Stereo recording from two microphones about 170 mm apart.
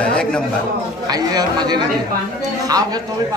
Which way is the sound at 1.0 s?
25° right (ahead or behind).